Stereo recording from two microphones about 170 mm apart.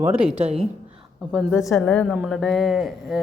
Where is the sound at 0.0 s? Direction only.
10° right (ahead or behind).